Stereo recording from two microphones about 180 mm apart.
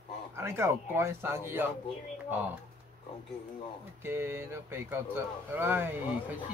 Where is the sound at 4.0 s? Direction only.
15° right (ahead or behind).